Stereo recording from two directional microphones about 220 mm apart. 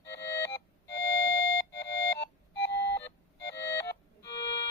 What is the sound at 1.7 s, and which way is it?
Music, 50° left (ahead or behind).